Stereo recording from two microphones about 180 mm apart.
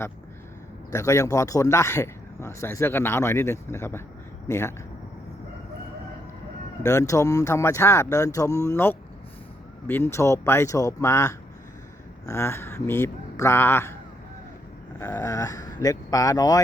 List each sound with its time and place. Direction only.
0.9 s speech: 15° left (ahead or behind)
6.8 s speech: 15° left (ahead or behind)
15.1 s speech: 15° left (ahead or behind)